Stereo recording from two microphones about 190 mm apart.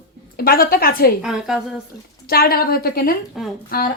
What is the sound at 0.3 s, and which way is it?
Speech, 50° left (ahead or behind).